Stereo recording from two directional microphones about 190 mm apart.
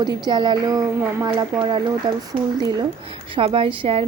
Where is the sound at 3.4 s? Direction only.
30° right (ahead or behind).